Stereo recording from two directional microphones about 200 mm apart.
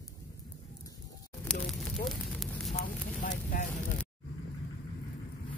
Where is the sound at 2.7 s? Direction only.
50° left (ahead or behind).